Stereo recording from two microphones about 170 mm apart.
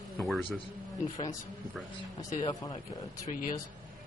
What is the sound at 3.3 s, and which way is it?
Speech, 50° left (ahead or behind).